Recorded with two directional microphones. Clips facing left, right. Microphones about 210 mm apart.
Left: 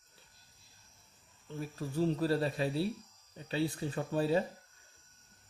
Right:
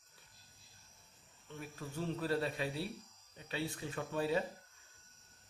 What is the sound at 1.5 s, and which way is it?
A man's voice, 35° left (ahead or behind).